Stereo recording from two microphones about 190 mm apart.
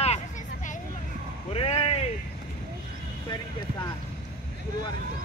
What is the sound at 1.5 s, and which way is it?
Speech, 30° left (ahead or behind).